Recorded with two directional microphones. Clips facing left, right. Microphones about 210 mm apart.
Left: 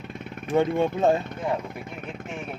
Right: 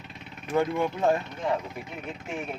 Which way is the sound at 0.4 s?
25° left (ahead or behind).